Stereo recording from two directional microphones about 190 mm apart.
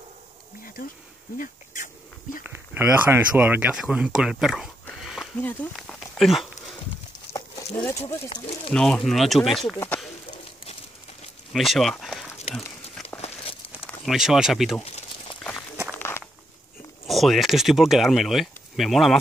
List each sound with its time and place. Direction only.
1.4 s speech: 45° left (ahead or behind)
2.4 s speech: 10° right (ahead or behind)
4.8 s a sound: centre (ahead or behind)
5.4 s speech: 10° left (ahead or behind)
7.3 s a sound: 20° left (ahead or behind)
8.3 s speech: 25° left (ahead or behind)
8.7 s speech: 5° left (ahead or behind)
11.5 s speech: centre (ahead or behind)
13.8 s speech: centre (ahead or behind)
16.0 s a sound: 10° left (ahead or behind)
17.0 s speech: centre (ahead or behind)